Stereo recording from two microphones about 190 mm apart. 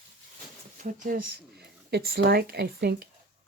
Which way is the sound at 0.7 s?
45° right (ahead or behind).